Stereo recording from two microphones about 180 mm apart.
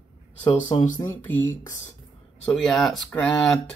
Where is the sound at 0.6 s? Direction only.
40° left (ahead or behind).